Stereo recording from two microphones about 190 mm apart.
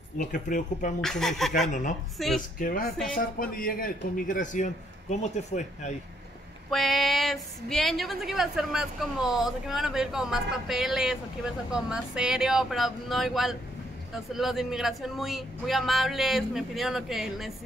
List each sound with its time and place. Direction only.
0.3 s a man's voice: 45° left (ahead or behind)
1.0 s a woman's voice: centre (ahead or behind)
1.7 s speech: 40° left (ahead or behind)
2.1 s a woman's voice: centre (ahead or behind)
2.6 s a man's voice: 45° left (ahead or behind)
6.7 s a woman's voice: centre (ahead or behind)